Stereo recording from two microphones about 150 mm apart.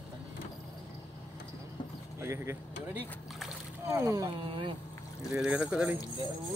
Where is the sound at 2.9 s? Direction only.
10° right (ahead or behind).